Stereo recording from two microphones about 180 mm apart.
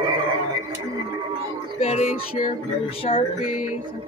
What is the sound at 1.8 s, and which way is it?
Music, 35° left (ahead or behind).